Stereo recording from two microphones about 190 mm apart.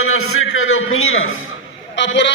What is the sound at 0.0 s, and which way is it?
A man's voice, 90° left.